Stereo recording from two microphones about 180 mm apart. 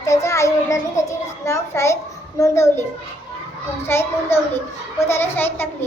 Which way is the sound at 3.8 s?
15° left (ahead or behind).